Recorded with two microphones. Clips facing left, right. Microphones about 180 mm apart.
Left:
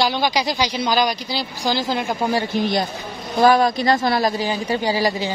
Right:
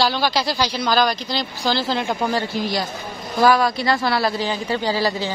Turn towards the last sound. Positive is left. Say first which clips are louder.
# left 1 dB
turn(degrees=15)  # may be behind; listen again after turning